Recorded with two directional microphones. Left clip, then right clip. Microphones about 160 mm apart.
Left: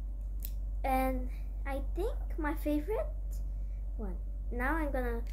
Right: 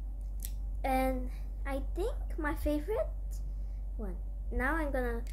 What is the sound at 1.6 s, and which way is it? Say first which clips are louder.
Speech: right 1 dB; 5° right (ahead or behind).